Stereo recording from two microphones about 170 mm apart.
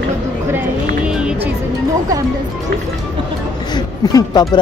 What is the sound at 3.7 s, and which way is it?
Speech, 25° left (ahead or behind).